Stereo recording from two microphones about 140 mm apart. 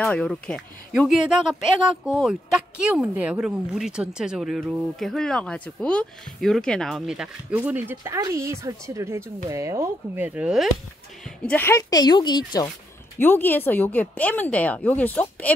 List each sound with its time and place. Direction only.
0.0 s speech: 10° left (ahead or behind)
11.4 s speech: 15° left (ahead or behind)
13.2 s a woman's voice: 15° left (ahead or behind)